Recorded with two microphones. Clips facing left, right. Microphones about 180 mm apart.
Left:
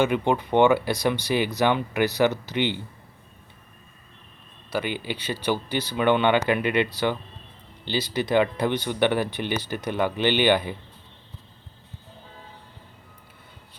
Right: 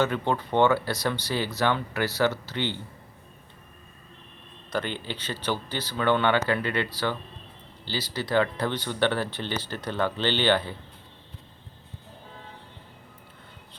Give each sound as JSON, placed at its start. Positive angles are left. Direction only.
{"t": 0.0, "sound": "speech", "side_deg": 15}
{"t": 4.7, "sound": "speech", "side_deg": 10}